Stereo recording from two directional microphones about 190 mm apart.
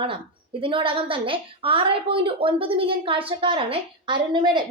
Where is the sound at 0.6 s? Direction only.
30° right (ahead or behind).